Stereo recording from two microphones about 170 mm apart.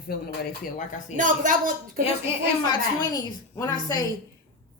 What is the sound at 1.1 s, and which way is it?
Speech, 50° right (ahead or behind).